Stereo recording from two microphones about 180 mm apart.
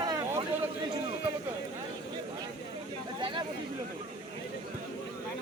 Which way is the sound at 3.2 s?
25° right (ahead or behind).